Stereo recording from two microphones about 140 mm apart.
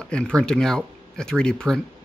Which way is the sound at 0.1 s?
5° left (ahead or behind).